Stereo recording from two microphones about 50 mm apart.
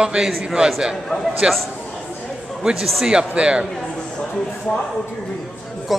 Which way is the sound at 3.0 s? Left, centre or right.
Centre.